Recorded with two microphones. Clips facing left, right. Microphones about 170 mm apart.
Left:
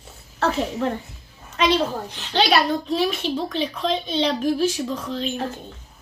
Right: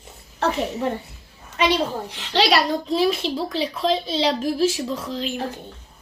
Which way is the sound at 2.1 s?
75° right (ahead or behind).